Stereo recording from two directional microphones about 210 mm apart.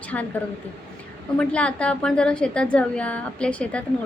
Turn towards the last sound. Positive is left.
turn(degrees=5)  # may be behind; listen again after turning